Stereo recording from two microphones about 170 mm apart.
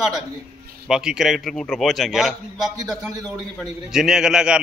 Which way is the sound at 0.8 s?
5° right (ahead or behind).